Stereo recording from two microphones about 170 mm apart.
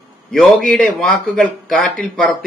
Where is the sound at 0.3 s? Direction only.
Centre (ahead or behind).